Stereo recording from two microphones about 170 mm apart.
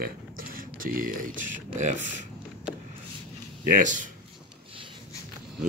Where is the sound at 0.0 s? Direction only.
55° right (ahead or behind).